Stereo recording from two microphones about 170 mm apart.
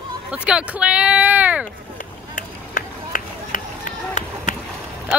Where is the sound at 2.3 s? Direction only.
55° left (ahead or behind).